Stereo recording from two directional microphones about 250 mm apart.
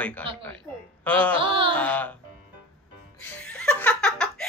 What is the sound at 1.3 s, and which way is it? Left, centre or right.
Music, right.